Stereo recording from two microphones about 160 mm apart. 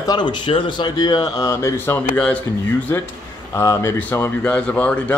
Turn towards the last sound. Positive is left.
turn(degrees=10)  # may be behind; listen again after turning